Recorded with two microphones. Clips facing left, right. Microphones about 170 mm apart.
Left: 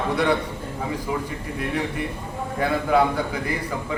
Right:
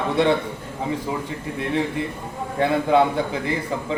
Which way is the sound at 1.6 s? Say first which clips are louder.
Right 3 dB; 25° right (ahead or behind).